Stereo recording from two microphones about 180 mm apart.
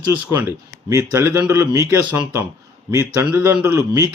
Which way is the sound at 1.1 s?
15° right (ahead or behind).